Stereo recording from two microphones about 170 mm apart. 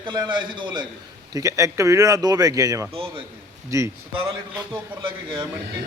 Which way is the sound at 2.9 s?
30° right (ahead or behind).